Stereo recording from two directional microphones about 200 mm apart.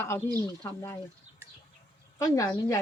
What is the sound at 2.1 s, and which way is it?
Speech, 15° left (ahead or behind).